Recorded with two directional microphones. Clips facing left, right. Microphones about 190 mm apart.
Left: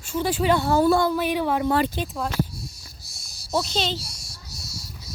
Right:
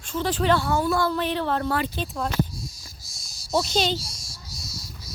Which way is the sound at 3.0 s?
60° left (ahead or behind).